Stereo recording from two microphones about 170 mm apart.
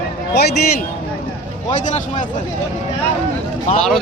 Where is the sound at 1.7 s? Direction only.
45° left (ahead or behind).